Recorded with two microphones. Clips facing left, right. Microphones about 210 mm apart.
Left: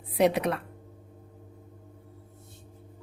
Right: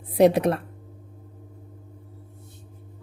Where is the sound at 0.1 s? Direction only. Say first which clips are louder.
Right 6 dB; 40° right (ahead or behind).